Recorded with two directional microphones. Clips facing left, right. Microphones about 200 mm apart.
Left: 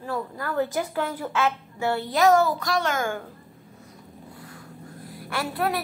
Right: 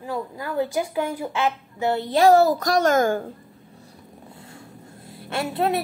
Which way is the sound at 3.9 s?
25° right (ahead or behind).